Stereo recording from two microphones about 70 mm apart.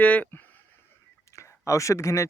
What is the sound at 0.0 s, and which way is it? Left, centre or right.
Speech, centre.